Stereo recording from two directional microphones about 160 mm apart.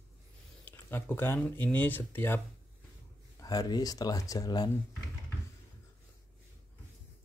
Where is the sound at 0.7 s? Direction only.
15° left (ahead or behind).